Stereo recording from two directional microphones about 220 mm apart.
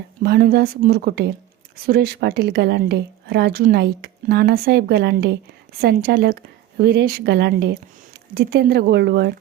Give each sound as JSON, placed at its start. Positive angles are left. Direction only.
{"t": 0.2, "sound": "a woman's voice", "side_deg": -45}